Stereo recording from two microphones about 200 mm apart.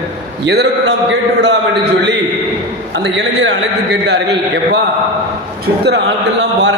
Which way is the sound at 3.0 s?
60° right (ahead or behind).